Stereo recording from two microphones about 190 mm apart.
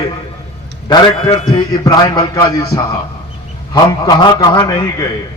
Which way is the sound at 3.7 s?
20° left (ahead or behind).